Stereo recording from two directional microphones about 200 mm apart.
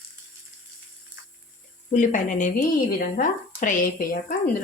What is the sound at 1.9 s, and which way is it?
Speech, 40° left (ahead or behind).